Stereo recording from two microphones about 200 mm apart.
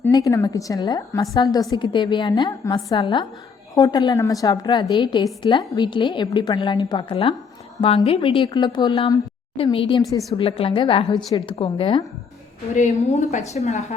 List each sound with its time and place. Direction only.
0.0 s a woman's voice: 15° left (ahead or behind)
12.7 s a woman's voice: 35° left (ahead or behind)